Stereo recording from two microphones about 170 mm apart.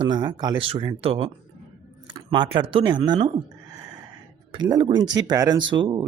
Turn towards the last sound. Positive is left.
turn(degrees=-25)  # may be behind; listen again after turning